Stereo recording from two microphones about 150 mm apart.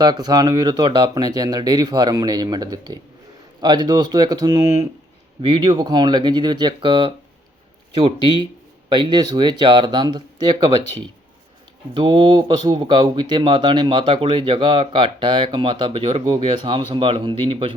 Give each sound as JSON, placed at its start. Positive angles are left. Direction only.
{"t": 0.0, "sound": "speech", "side_deg": -25}